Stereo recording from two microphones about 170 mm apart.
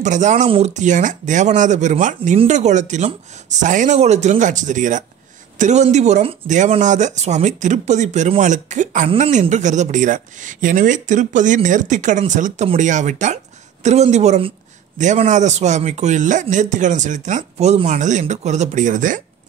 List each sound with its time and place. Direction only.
0.0 s speech: 45° right (ahead or behind)